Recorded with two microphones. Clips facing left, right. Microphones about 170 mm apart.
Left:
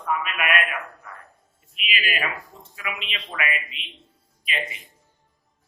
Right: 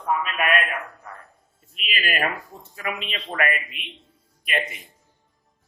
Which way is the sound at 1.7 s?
45° right (ahead or behind).